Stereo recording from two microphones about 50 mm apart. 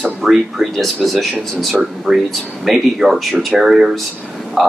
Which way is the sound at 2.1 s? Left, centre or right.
Centre.